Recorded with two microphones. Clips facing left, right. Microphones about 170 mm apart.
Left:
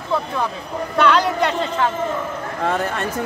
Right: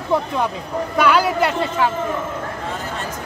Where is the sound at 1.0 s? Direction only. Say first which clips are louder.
Even; 10° right (ahead or behind).